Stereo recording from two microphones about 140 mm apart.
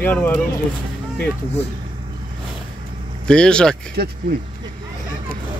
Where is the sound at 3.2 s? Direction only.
5° left (ahead or behind).